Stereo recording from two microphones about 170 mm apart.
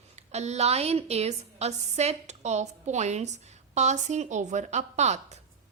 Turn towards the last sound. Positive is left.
turn(degrees=-40)  # may be behind; listen again after turning